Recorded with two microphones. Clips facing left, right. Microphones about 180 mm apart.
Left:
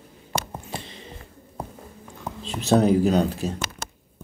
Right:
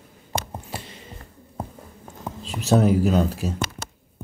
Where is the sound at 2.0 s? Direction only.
40° right (ahead or behind).